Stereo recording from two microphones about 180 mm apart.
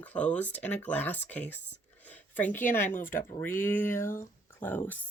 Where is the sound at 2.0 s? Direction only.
10° left (ahead or behind).